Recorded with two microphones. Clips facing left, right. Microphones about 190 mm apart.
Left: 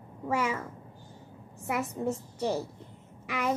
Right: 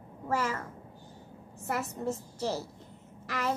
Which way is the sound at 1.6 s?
5° left (ahead or behind).